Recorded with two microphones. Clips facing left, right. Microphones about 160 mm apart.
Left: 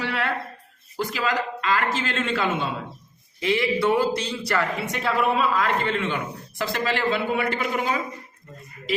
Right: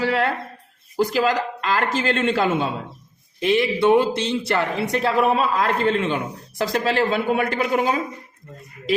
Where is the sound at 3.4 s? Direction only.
20° right (ahead or behind).